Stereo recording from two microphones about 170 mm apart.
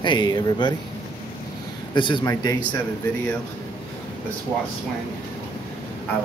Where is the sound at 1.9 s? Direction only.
25° left (ahead or behind).